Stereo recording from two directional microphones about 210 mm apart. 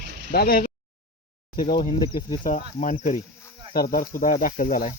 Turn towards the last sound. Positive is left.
turn(degrees=40)  # may be behind; listen again after turning